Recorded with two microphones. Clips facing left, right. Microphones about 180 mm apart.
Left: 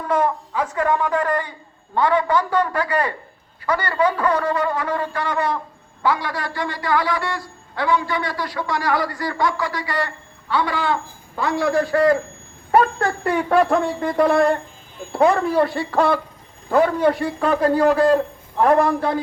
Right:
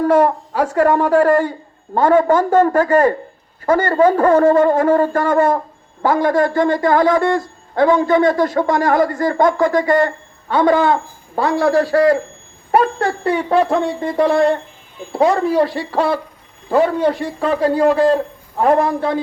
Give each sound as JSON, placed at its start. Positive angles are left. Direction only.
{"t": 0.6, "sound": "a man's voice", "side_deg": -50}